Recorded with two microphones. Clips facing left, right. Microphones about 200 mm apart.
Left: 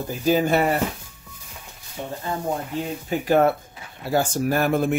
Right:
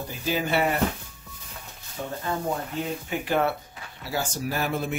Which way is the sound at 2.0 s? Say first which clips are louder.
Left 2 dB; 25° left (ahead or behind).